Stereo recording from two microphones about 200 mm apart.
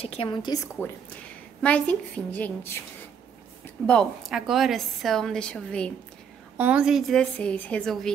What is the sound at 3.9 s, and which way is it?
A woman's voice, centre (ahead or behind).